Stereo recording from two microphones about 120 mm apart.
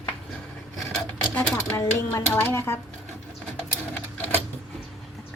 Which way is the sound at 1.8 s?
20° left (ahead or behind).